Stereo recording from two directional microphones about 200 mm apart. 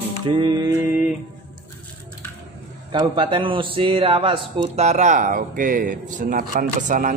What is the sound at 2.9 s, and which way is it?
A man's voice, 25° right (ahead or behind).